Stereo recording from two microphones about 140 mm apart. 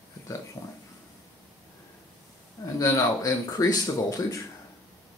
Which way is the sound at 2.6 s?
20° left (ahead or behind).